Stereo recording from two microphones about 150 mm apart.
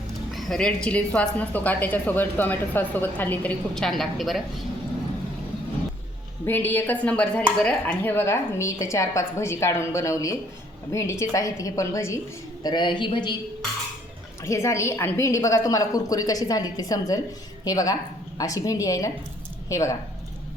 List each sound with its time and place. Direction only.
0.3 s a woman's voice: centre (ahead or behind)
6.4 s a woman's voice: 15° left (ahead or behind)
12.6 s a woman's voice: 30° left (ahead or behind)
14.4 s a woman's voice: 20° left (ahead or behind)